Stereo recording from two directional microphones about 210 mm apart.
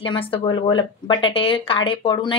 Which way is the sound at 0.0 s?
25° left (ahead or behind).